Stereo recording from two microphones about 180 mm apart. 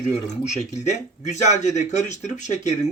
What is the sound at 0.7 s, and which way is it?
Speech, 40° left (ahead or behind).